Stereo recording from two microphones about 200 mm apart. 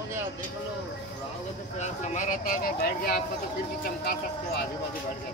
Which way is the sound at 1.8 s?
40° left (ahead or behind).